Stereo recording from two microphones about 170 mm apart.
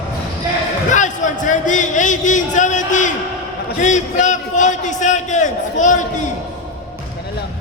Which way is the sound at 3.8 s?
45° left (ahead or behind).